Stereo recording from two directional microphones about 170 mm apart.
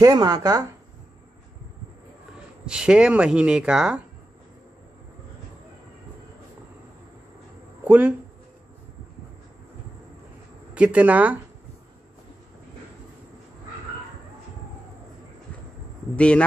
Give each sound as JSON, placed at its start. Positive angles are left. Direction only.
{"t": 0.0, "sound": "speech", "side_deg": -25}
{"t": 2.6, "sound": "speech", "side_deg": -5}
{"t": 7.8, "sound": "speech", "side_deg": -10}
{"t": 10.7, "sound": "speech", "side_deg": -10}
{"t": 16.2, "sound": "a man's voice", "side_deg": 5}